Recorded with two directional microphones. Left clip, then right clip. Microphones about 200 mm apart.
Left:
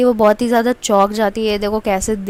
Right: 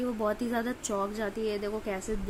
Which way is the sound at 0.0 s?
45° left (ahead or behind).